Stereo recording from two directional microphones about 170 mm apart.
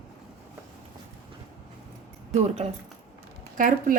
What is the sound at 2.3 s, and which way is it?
Speech, 40° right (ahead or behind).